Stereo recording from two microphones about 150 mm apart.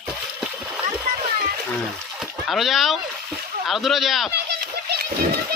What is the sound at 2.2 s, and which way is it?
Speech, centre (ahead or behind).